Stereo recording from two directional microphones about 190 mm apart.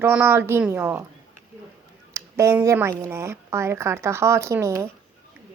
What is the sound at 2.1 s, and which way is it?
A woman's voice, 15° right (ahead or behind).